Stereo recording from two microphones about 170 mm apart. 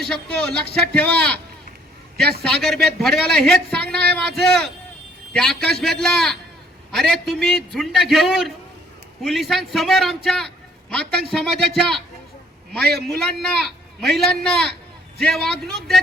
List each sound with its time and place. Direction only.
0.0 s a man's voice: 5° left (ahead or behind)
2.4 s a man's voice: 5° left (ahead or behind)